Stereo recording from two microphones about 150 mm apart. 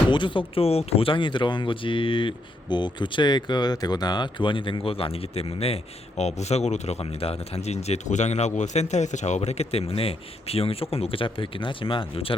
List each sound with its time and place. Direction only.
0.1 s speech: 35° left (ahead or behind)